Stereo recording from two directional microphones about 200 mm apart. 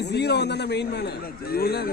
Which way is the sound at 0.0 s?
55° left (ahead or behind).